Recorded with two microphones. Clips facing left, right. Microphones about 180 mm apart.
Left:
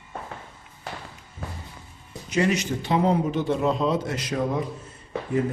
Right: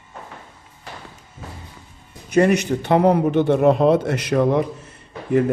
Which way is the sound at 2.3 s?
60° right (ahead or behind).